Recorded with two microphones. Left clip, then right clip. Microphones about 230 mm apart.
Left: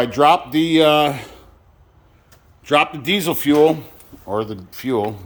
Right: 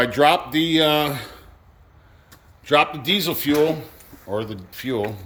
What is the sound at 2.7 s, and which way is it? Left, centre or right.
Speech, centre.